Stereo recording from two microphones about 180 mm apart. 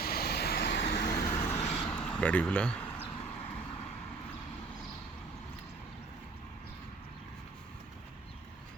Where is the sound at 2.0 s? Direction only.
5° left (ahead or behind).